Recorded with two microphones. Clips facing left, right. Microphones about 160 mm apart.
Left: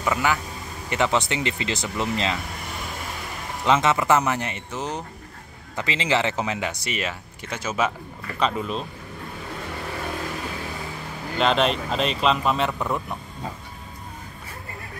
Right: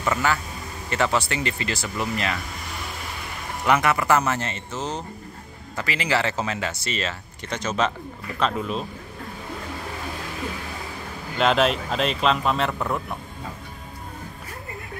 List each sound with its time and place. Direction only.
0.0 s speech: 10° left (ahead or behind)
3.6 s speech: 20° left (ahead or behind); by 8.8 s centre (ahead or behind)
11.3 s speech: centre (ahead or behind)